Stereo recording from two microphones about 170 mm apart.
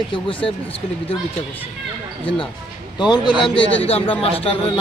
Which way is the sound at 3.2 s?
30° left (ahead or behind).